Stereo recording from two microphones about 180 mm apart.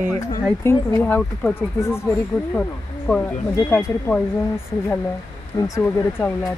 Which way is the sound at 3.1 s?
5° left (ahead or behind).